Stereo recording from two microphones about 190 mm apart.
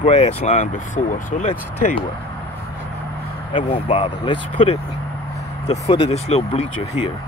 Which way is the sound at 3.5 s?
30° left (ahead or behind).